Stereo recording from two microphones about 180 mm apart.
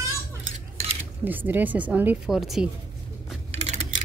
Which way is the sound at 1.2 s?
10° right (ahead or behind).